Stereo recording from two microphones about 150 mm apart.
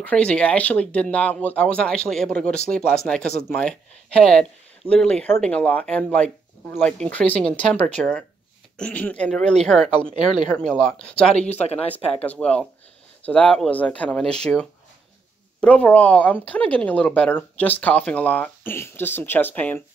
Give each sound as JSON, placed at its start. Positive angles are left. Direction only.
{"t": 0.0, "sound": "speech", "side_deg": 10}
{"t": 11.3, "sound": "speech", "side_deg": 45}
{"t": 11.9, "sound": "speech", "side_deg": 10}